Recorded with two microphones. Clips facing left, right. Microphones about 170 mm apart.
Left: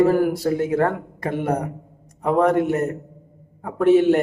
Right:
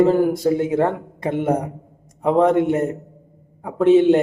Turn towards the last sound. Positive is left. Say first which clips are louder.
# right 2 dB
turn(degrees=-20)  # may be behind; listen again after turning